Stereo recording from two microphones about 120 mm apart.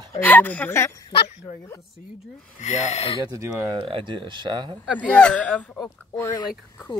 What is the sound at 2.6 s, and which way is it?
Speech, 70° left (ahead or behind).